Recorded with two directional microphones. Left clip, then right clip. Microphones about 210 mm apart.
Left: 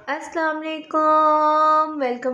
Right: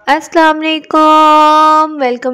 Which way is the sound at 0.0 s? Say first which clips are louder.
Right 15 dB; 50° right (ahead or behind).